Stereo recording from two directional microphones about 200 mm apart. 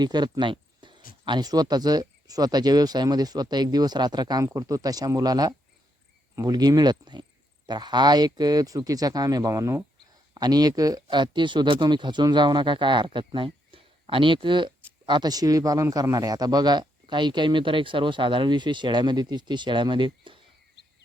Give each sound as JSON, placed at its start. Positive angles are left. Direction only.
{"t": 0.0, "sound": "speech", "side_deg": -20}